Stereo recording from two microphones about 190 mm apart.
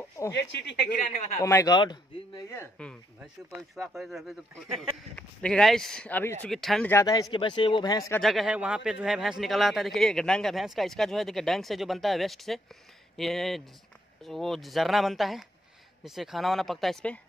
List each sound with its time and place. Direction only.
0.3 s speech: 65° left (ahead or behind)
1.4 s a man's voice: 15° left (ahead or behind)
6.9 s speech: 15° left (ahead or behind)
8.2 s a man's voice: centre (ahead or behind)